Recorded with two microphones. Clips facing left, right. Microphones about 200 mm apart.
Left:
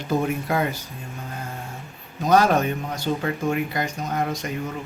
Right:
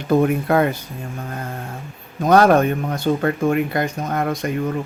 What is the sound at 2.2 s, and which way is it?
Speech, 60° right (ahead or behind).